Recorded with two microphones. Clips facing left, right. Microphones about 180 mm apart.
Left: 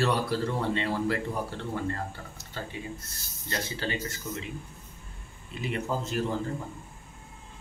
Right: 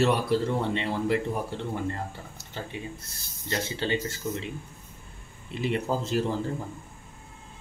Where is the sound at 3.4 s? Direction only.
25° right (ahead or behind).